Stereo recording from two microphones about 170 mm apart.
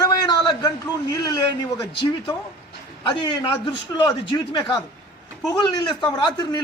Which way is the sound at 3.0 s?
25° left (ahead or behind).